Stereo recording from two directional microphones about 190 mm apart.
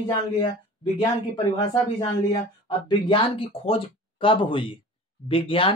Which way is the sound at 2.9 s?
25° left (ahead or behind).